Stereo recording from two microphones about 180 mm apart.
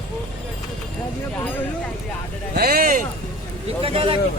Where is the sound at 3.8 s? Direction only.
30° right (ahead or behind).